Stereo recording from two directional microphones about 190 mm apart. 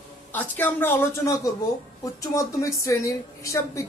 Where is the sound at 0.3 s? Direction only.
10° left (ahead or behind).